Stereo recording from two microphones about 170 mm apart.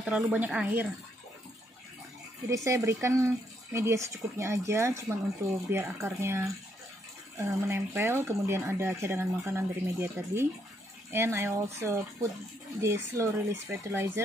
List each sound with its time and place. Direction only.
0.0 s speech: 10° right (ahead or behind)
2.5 s speech: 20° right (ahead or behind)